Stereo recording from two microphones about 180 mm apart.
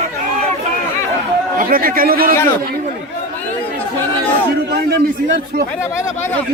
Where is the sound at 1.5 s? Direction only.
55° right (ahead or behind).